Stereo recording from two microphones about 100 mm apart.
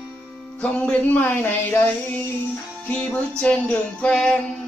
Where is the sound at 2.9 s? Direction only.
15° left (ahead or behind).